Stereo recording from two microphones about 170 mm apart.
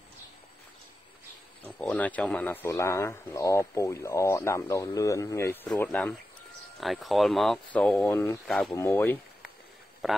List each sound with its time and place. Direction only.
1.8 s speech: 10° left (ahead or behind)
8.7 s speech: 15° left (ahead or behind)
10.0 s speech: centre (ahead or behind)